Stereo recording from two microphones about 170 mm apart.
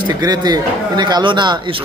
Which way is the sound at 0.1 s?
20° right (ahead or behind).